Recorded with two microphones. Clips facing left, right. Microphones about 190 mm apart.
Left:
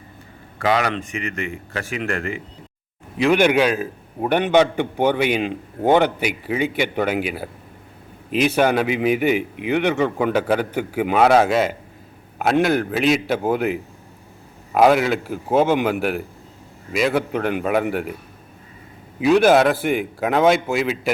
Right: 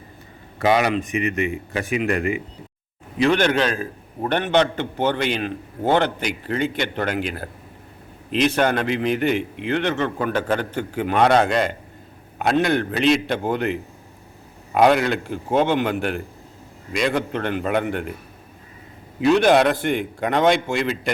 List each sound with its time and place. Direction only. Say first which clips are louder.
0.6 s a man's voice: right 2 dB; 20° right (ahead or behind)
3.2 s a man's voice: left 2 dB; 10° left (ahead or behind)
19.2 s a man's voice: left 1 dB; 5° left (ahead or behind)